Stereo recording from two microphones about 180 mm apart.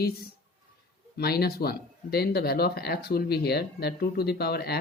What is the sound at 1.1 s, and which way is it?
Speech, 60° left (ahead or behind).